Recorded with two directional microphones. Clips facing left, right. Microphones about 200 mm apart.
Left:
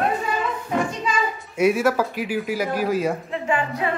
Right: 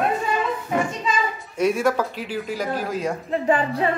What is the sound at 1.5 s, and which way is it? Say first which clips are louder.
Speech: left 2 dB; 5° left (ahead or behind).